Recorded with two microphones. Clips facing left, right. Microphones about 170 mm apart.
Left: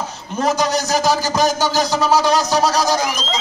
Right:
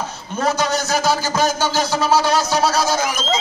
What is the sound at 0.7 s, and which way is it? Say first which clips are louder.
Speech: left 2 dB; 40° left (ahead or behind).